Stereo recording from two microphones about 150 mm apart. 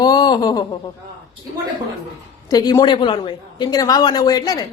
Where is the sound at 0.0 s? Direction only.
30° left (ahead or behind).